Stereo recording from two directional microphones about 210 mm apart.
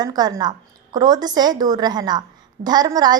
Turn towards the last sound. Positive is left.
turn(degrees=-20)  # may be behind; listen again after turning